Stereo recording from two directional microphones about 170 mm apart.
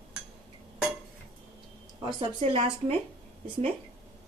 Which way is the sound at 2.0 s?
30° right (ahead or behind).